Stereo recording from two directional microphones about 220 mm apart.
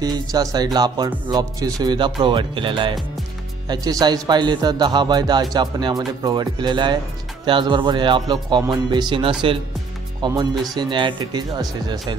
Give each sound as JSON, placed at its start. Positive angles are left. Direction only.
{"t": 0.0, "sound": "a man's voice", "side_deg": -15}